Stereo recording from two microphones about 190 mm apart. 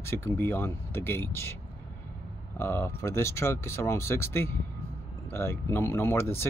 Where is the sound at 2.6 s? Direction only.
15° left (ahead or behind).